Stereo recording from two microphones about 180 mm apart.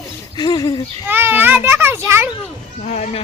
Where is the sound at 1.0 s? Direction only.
10° right (ahead or behind).